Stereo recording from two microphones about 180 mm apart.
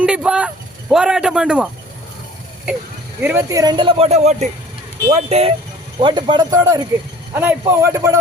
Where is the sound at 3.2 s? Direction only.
15° right (ahead or behind).